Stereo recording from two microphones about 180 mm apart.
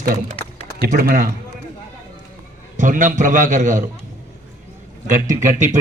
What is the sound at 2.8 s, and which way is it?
A man's voice, 45° right (ahead or behind).